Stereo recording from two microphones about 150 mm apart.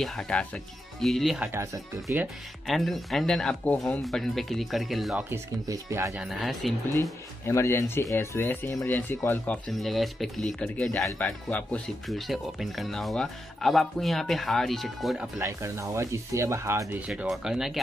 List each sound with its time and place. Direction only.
0.0 s speech: 5° left (ahead or behind)
1.5 s speech: 20° right (ahead or behind)
2.6 s speech: centre (ahead or behind)
5.3 s speech: 20° right (ahead or behind)
6.1 s speech: centre (ahead or behind)
7.0 s speech: 20° left (ahead or behind)
9.7 s speech: centre (ahead or behind)
15.3 s speech: 20° right (ahead or behind)
17.1 s speech: 5° right (ahead or behind)